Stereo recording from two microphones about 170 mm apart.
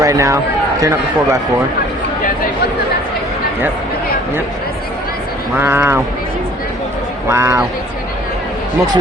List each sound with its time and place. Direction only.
0.0 s speech: 20° right (ahead or behind)
5.5 s speech: 10° right (ahead or behind)
7.3 s speech: 15° right (ahead or behind)